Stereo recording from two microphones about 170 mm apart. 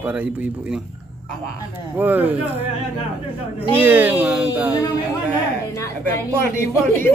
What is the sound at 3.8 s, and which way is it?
Speech, 10° right (ahead or behind).